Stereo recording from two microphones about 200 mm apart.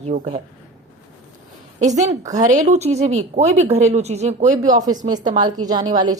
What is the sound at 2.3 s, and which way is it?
Speech, 40° right (ahead or behind).